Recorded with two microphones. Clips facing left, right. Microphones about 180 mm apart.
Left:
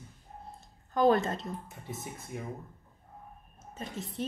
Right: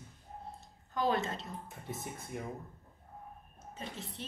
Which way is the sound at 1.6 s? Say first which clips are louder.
Left 1 dB; centre (ahead or behind).